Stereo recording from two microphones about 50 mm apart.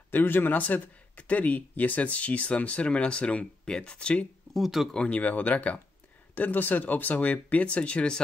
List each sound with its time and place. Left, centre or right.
0.1 s speech: left
4.6 s speech: centre
5.1 s speech: left